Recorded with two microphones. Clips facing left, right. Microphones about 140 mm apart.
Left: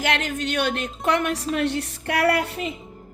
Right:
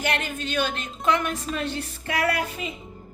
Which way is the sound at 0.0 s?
90° left.